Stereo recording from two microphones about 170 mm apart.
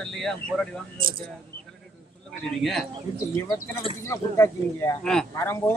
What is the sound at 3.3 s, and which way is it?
A man's voice, 20° left (ahead or behind).